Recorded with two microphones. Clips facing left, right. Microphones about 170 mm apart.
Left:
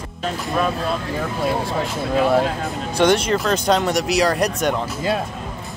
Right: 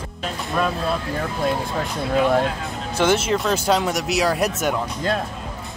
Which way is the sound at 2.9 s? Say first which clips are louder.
Left 2 dB; 5° right (ahead or behind).